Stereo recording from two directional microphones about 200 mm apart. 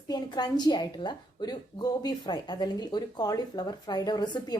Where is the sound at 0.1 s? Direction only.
20° left (ahead or behind).